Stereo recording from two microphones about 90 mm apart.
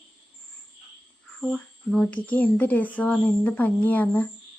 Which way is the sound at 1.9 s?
10° left (ahead or behind).